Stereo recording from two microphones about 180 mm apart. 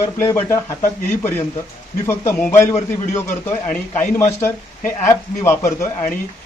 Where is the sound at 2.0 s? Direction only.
15° left (ahead or behind).